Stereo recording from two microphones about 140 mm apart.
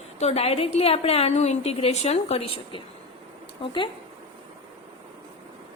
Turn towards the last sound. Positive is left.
turn(degrees=35)  # may be behind; listen again after turning